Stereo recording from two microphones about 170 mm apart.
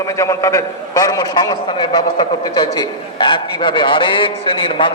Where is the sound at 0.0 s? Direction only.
20° left (ahead or behind).